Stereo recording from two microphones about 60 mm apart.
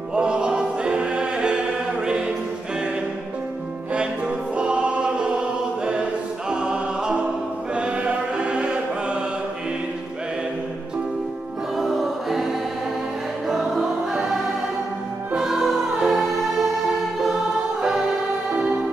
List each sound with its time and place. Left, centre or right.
0.1 s music: centre
4.6 s choir: centre
6.5 s music: centre
11.7 s music: centre
13.5 s music: centre
18.5 s music: centre